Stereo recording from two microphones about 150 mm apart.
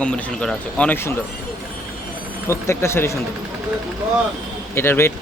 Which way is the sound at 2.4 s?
20° left (ahead or behind).